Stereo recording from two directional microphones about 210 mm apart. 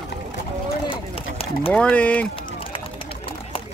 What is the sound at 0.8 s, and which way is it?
Run, 25° left (ahead or behind).